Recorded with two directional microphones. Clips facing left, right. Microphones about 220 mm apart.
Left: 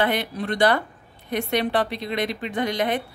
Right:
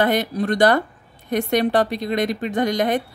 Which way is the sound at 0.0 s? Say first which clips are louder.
Right 4 dB; 45° right (ahead or behind).